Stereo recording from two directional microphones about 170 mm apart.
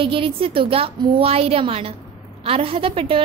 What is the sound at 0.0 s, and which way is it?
A woman's voice, 30° right (ahead or behind).